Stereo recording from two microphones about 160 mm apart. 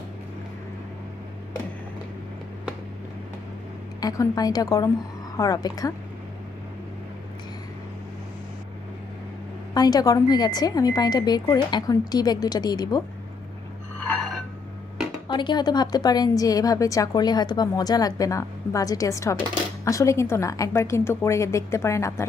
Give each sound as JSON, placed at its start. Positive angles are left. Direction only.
{"t": 4.0, "sound": "a woman's voice", "side_deg": 25}
{"t": 9.7, "sound": "a woman's voice", "side_deg": 25}
{"t": 15.3, "sound": "a woman's voice", "side_deg": 30}